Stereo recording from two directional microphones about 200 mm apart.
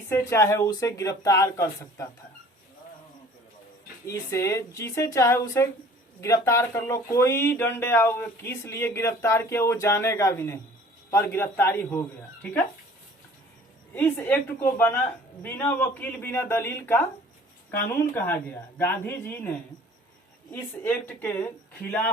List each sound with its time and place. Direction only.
0.1 s speech: 15° left (ahead or behind)
4.0 s speech: 15° left (ahead or behind)
13.9 s speech: 10° left (ahead or behind)